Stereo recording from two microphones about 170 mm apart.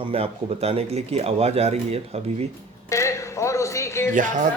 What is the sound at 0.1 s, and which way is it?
Speech, 35° right (ahead or behind).